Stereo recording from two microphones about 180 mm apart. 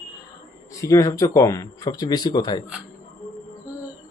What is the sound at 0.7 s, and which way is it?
Speech, 20° left (ahead or behind).